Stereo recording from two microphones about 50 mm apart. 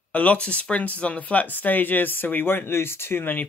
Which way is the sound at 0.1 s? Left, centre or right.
Left.